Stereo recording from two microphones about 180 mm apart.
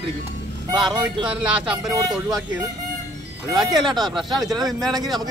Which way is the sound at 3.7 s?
20° right (ahead or behind).